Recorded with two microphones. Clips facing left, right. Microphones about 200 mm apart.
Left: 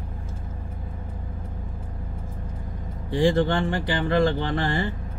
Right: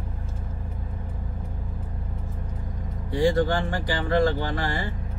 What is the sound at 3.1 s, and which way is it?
Speech, 25° left (ahead or behind).